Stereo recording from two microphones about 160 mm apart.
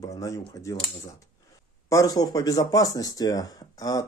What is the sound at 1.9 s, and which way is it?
Speech, 20° left (ahead or behind).